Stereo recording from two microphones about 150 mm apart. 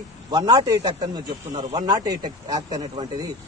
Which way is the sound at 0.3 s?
25° right (ahead or behind).